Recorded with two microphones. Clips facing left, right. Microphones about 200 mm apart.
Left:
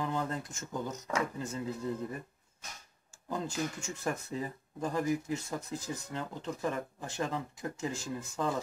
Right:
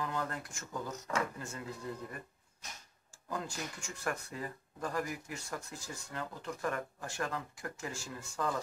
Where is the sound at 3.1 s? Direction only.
25° left (ahead or behind).